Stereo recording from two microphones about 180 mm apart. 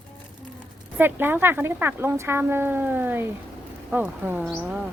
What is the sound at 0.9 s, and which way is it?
A woman's voice, 10° right (ahead or behind).